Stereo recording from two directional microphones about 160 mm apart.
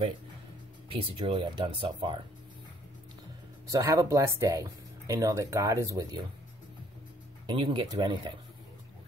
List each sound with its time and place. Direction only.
0.9 s speech: 35° right (ahead or behind)
3.7 s speech: 20° right (ahead or behind)
7.4 s speech: 30° right (ahead or behind)